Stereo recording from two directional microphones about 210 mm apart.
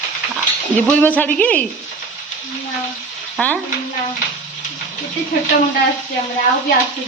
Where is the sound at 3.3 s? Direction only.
5° left (ahead or behind).